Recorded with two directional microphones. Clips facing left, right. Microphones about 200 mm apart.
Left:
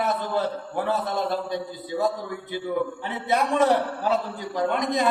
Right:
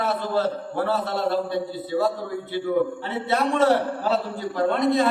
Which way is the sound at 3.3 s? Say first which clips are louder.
Right 1 dB; 15° left (ahead or behind).